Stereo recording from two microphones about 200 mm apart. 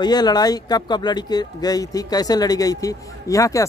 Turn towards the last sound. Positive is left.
turn(degrees=15)  # may be behind; listen again after turning